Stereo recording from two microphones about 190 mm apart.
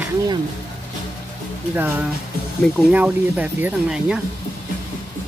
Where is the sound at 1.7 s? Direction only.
10° right (ahead or behind).